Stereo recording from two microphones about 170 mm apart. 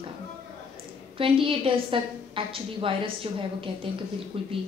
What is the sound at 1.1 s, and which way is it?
A woman's voice, 30° right (ahead or behind).